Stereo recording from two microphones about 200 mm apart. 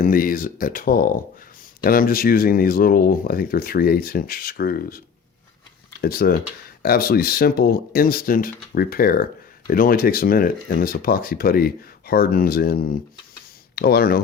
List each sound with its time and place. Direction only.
0.0 s speech: 45° left (ahead or behind)